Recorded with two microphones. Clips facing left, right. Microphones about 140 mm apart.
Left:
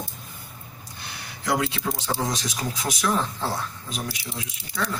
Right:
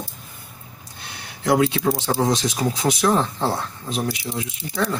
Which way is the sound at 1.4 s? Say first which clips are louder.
Right 7 dB; 25° right (ahead or behind).